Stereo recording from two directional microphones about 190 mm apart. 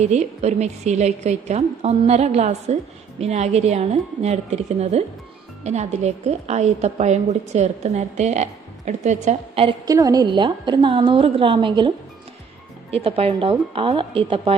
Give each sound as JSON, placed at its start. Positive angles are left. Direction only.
{"t": 0.0, "sound": "a woman's voice", "side_deg": -35}
{"t": 12.9, "sound": "a woman's voice", "side_deg": -30}